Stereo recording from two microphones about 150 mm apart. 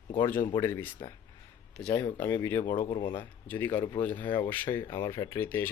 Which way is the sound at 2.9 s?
30° left (ahead or behind).